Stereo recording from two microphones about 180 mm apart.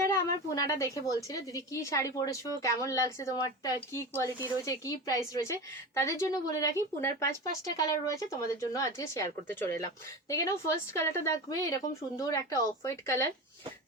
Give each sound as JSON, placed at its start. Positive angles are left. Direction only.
{"t": 0.0, "sound": "a woman's voice", "side_deg": 15}